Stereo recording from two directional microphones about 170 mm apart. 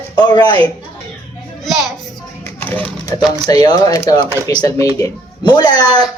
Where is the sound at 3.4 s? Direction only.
25° left (ahead or behind).